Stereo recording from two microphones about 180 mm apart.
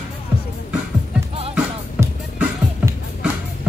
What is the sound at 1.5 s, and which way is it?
Music, 10° right (ahead or behind).